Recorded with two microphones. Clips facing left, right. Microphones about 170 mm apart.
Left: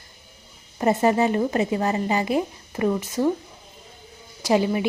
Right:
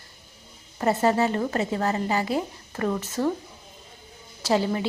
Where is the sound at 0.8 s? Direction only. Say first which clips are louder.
Left 2 dB; 15° left (ahead or behind).